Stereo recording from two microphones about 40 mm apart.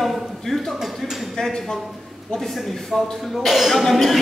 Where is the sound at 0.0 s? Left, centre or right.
Centre.